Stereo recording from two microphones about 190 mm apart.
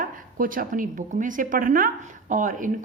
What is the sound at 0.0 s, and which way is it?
Speech, 45° right (ahead or behind).